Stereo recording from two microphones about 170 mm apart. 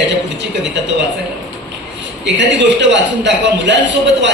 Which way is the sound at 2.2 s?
90° right.